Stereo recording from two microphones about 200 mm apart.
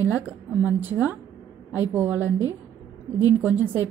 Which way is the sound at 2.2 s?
15° left (ahead or behind).